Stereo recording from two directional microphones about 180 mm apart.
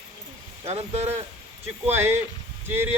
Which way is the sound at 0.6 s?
35° right (ahead or behind).